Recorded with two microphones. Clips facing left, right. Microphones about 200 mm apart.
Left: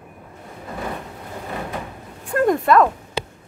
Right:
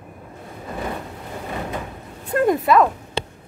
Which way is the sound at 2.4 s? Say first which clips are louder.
Left 1 dB; centre (ahead or behind).